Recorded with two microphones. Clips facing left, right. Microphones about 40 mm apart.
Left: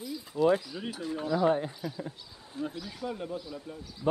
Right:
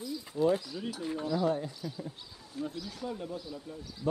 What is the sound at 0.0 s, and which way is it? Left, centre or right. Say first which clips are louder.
Speech: left 2 dB; centre.